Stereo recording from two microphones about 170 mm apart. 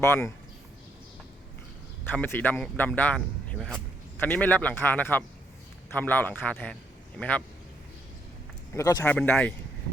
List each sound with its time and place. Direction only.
0.0 s speech: 15° left (ahead or behind)
2.0 s speech: 10° left (ahead or behind)
8.7 s speech: 20° left (ahead or behind)